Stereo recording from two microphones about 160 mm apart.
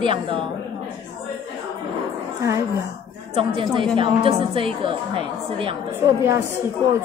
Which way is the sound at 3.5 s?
30° right (ahead or behind).